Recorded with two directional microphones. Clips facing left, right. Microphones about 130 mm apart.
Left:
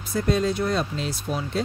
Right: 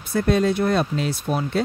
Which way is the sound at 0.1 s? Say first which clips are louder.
Right 4 dB; 60° right (ahead or behind).